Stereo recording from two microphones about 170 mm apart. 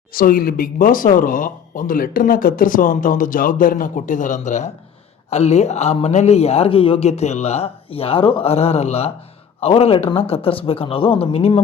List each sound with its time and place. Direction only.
0.1 s speech: 60° left (ahead or behind); by 11.6 s 35° left (ahead or behind)